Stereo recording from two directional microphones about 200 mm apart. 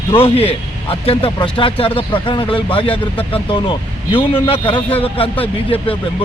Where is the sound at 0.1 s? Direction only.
30° left (ahead or behind).